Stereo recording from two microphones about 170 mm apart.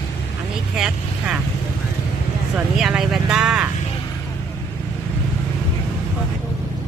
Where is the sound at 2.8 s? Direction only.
Centre (ahead or behind).